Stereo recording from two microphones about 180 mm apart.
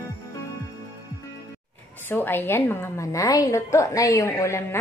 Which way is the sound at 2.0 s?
10° left (ahead or behind).